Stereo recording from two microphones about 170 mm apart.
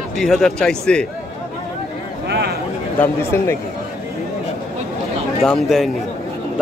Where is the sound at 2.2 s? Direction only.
75° right (ahead or behind).